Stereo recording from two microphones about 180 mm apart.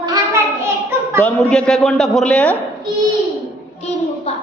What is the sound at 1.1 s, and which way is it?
A woman's voice, 10° left (ahead or behind).